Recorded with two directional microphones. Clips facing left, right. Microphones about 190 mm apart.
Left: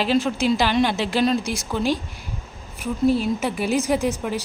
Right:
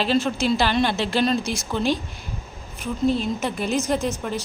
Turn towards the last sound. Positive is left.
turn(degrees=15)  # may be behind; listen again after turning